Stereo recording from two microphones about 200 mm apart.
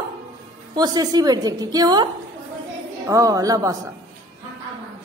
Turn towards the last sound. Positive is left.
turn(degrees=-15)  # may be behind; listen again after turning